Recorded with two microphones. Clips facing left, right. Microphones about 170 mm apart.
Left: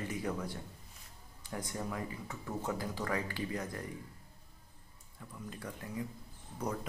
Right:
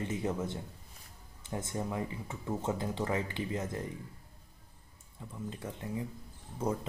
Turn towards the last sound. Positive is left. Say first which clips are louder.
# right 4 dB
turn(degrees=-25)  # may be behind; listen again after turning